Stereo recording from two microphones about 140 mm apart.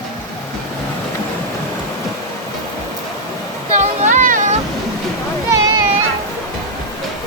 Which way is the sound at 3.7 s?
60° right (ahead or behind).